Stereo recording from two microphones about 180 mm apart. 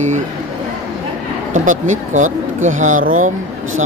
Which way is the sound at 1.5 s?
45° right (ahead or behind).